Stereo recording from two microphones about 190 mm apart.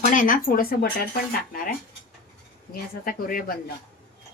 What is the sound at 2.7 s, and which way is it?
Speech, 50° left (ahead or behind).